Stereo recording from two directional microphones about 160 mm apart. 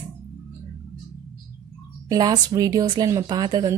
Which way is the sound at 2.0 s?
25° right (ahead or behind).